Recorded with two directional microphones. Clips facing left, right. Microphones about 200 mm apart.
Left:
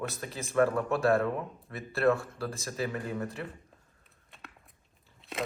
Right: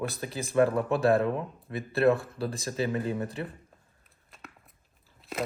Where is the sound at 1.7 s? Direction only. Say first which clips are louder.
Right 3 dB; 20° right (ahead or behind).